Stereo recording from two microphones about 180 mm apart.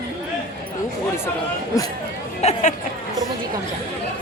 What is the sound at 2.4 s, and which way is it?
Speech, 35° left (ahead or behind).